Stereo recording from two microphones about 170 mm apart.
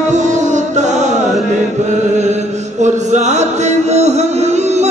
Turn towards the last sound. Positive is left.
turn(degrees=-40)  # may be behind; listen again after turning